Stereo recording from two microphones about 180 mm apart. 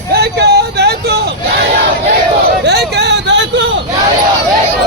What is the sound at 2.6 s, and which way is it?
Vehicle, 65° right (ahead or behind).